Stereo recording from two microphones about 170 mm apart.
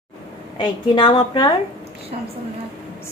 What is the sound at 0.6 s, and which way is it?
Speech, 25° left (ahead or behind).